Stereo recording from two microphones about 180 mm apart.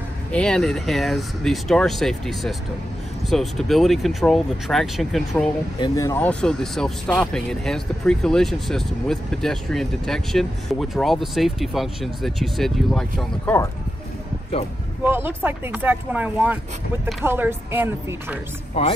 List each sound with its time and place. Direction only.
0.3 s speech: 5° left (ahead or behind)
5.8 s speech: 20° left (ahead or behind); by 13.6 s centre (ahead or behind)
15.0 s speech: 10° right (ahead or behind)
18.8 s a man's voice: 30° left (ahead or behind)